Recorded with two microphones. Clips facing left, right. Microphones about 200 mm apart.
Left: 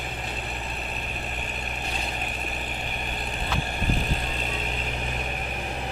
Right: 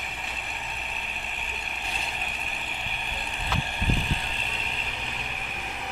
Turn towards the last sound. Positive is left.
turn(degrees=45)  # may be behind; listen again after turning